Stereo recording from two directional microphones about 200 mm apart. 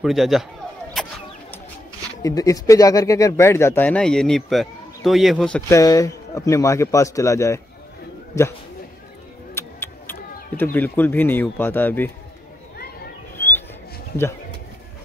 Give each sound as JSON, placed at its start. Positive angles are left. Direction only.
{"t": 0.0, "sound": "a man's voice", "side_deg": 0}
{"t": 1.0, "sound": "a sound", "side_deg": 0}
{"t": 2.2, "sound": "speech", "side_deg": 15}
{"t": 5.7, "sound": "speech", "side_deg": 15}
{"t": 9.5, "sound": "a sound", "side_deg": 10}
{"t": 10.6, "sound": "speech", "side_deg": 10}